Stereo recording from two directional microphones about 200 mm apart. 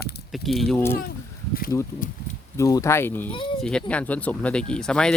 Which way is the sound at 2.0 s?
40° left (ahead or behind).